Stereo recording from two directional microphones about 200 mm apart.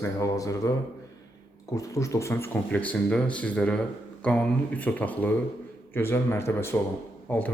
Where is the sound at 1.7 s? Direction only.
15° left (ahead or behind).